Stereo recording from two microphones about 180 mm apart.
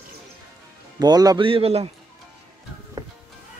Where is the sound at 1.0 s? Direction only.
20° right (ahead or behind).